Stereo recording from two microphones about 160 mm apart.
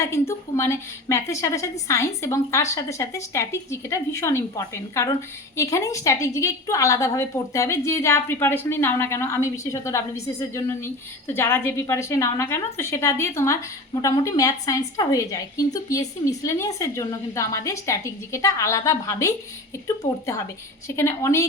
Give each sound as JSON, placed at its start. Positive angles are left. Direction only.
{"t": 0.0, "sound": "a woman's voice", "side_deg": 15}
{"t": 20.8, "sound": "a woman's voice", "side_deg": 20}